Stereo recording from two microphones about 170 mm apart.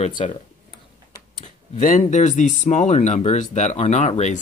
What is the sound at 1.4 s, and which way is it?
Speech, 45° left (ahead or behind).